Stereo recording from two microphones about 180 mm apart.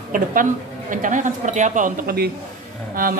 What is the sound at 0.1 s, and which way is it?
A man's voice, 50° right (ahead or behind).